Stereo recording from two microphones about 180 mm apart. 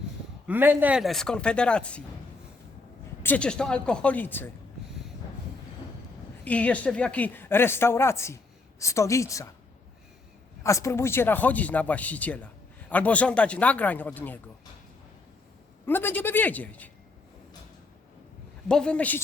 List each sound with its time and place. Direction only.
0.4 s speech: 10° right (ahead or behind); by 2.0 s 5° left (ahead or behind)
3.2 s a woman's voice: 5° left (ahead or behind)
6.4 s a woman's voice: 5° left (ahead or behind)
10.6 s a woman's voice: 15° left (ahead or behind)
15.9 s a woman's voice: 10° left (ahead or behind)
18.7 s a woman's voice: 5° left (ahead or behind)